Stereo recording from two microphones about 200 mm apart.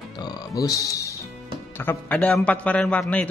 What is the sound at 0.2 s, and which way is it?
Music, 15° left (ahead or behind).